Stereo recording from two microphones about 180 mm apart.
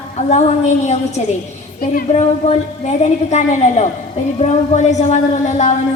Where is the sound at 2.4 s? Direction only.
40° left (ahead or behind).